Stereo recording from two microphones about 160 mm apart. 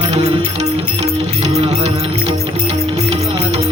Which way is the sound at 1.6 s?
40° right (ahead or behind).